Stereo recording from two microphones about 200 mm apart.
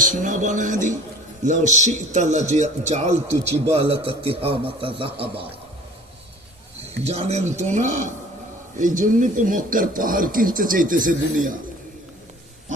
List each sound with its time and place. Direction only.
0.0 s a man's voice: 40° right (ahead or behind)
7.0 s a man's voice: 35° right (ahead or behind)